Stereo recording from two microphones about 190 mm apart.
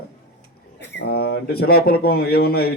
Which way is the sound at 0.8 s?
60° left (ahead or behind).